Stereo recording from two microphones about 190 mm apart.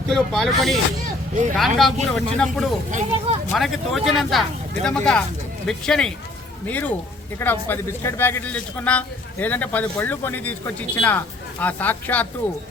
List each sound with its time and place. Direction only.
0.1 s speech: centre (ahead or behind)
2.9 s speech: 30° right (ahead or behind)
3.5 s a man's voice: centre (ahead or behind)